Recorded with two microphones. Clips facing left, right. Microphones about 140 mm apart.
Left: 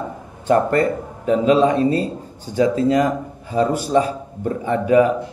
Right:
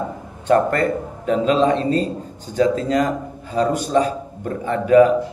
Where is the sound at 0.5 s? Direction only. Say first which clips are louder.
Even; 15° left (ahead or behind).